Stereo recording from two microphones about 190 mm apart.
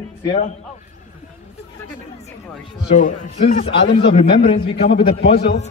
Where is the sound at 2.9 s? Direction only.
40° left (ahead or behind).